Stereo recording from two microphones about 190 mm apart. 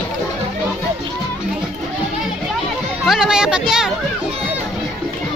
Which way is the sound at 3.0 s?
5° right (ahead or behind).